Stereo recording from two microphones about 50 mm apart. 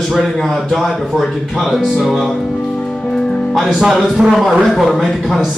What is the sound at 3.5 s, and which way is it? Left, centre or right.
A man's voice, centre.